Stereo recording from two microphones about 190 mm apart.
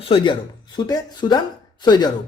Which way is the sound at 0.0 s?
30° left (ahead or behind).